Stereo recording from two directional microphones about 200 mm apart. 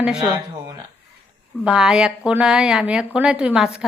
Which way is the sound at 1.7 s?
5° right (ahead or behind).